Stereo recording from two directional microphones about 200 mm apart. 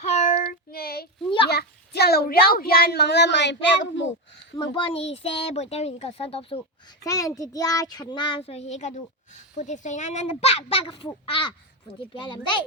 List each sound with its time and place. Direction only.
0.0 s child singing: 40° left (ahead or behind)
1.5 s a child's voice: 55° left (ahead or behind)
4.7 s a child's voice: 25° left (ahead or behind)